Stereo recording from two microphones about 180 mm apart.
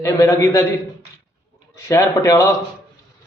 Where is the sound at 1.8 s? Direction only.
15° left (ahead or behind).